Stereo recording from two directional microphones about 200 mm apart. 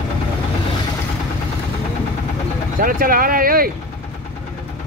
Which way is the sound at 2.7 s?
45° right (ahead or behind).